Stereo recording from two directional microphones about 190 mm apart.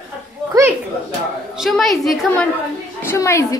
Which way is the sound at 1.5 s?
Centre (ahead or behind).